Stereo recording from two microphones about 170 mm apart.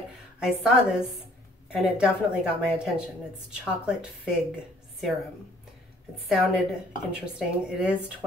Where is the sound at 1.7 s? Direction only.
5° right (ahead or behind).